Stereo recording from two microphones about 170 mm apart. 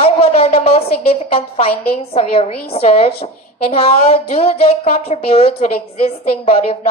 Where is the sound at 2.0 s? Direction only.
35° left (ahead or behind).